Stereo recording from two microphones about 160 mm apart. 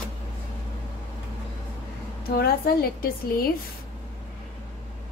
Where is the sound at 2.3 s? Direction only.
75° left (ahead or behind).